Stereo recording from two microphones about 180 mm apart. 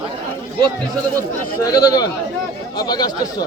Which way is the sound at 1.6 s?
20° left (ahead or behind).